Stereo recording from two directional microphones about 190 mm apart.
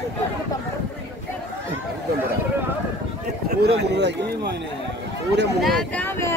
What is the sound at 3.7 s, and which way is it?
Speech, 65° right (ahead or behind).